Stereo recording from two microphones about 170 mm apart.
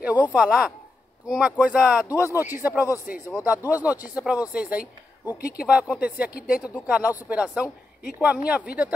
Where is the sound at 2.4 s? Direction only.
10° right (ahead or behind).